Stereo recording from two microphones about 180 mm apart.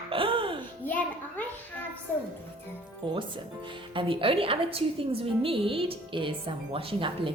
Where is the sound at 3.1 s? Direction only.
25° right (ahead or behind).